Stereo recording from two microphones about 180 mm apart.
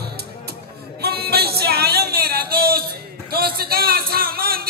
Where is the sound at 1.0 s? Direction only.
60° right (ahead or behind).